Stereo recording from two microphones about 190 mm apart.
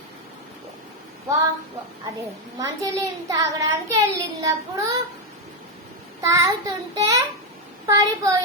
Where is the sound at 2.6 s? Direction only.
15° right (ahead or behind).